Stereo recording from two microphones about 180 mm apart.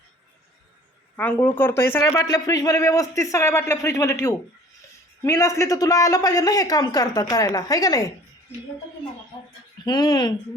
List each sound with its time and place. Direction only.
1.1 s a man's voice: 10° left (ahead or behind)
9.8 s a man's voice: 25° left (ahead or behind)